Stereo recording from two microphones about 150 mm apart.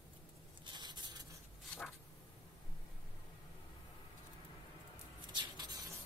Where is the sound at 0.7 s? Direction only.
30° right (ahead or behind).